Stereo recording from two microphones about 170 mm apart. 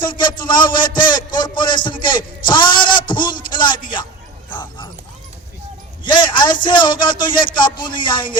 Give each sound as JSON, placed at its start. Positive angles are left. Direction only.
{"t": 0.0, "sound": "a man's voice", "side_deg": 30}
{"t": 2.5, "sound": "a sound", "side_deg": 30}
{"t": 4.4, "sound": "bow-wow", "side_deg": 25}
{"t": 6.0, "sound": "a man's voice", "side_deg": 30}